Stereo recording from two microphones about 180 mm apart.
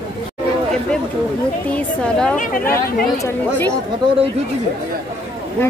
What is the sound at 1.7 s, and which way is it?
Speech, 5° left (ahead or behind).